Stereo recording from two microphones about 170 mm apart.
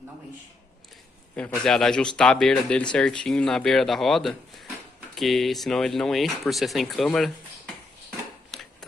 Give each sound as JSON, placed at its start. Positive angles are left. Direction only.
{"t": 1.3, "sound": "speech", "side_deg": 5}